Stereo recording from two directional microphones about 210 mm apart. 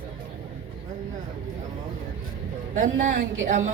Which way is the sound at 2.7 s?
35° right (ahead or behind).